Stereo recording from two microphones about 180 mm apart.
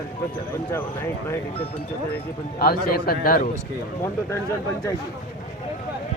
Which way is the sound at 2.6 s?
55° left (ahead or behind).